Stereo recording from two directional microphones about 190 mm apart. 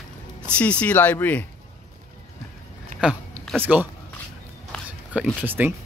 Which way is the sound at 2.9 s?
45° right (ahead or behind).